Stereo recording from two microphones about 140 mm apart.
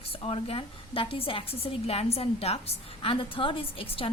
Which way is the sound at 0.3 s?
40° left (ahead or behind).